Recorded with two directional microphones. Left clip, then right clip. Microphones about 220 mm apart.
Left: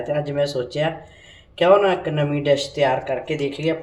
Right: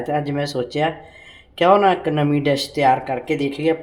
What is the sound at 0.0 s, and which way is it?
Speech, 40° right (ahead or behind).